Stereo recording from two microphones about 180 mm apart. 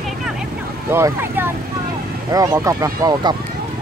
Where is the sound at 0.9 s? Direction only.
15° right (ahead or behind).